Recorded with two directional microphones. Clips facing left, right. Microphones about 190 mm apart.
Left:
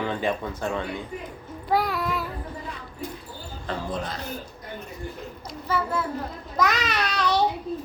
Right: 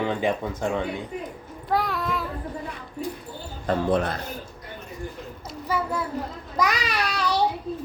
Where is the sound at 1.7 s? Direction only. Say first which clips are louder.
Left 1 dB; 5° left (ahead or behind).